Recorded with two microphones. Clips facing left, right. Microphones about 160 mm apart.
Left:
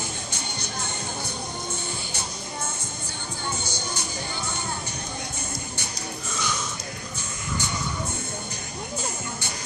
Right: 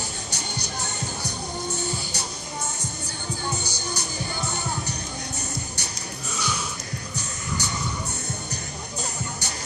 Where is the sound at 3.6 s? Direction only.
40° right (ahead or behind).